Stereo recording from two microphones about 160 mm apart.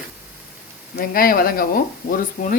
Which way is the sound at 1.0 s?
65° left (ahead or behind).